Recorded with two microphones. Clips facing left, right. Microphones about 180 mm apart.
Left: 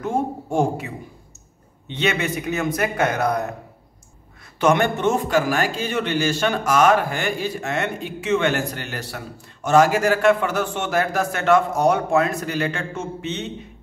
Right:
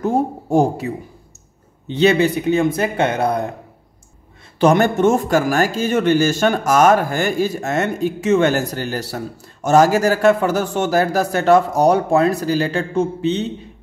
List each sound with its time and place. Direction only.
0.0 s speech: 40° right (ahead or behind)
4.6 s speech: 40° right (ahead or behind)